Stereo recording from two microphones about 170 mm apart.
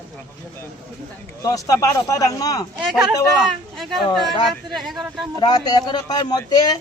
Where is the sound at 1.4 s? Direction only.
20° left (ahead or behind).